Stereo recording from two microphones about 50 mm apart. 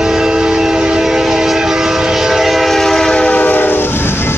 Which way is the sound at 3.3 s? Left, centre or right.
Left.